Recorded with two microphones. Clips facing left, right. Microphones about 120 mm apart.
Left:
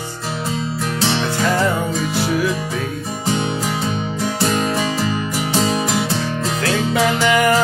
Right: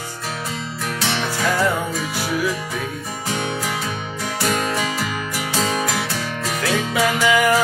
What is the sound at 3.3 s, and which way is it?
Music, 25° left (ahead or behind).